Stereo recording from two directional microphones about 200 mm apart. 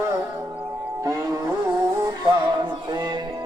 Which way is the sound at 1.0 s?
15° right (ahead or behind).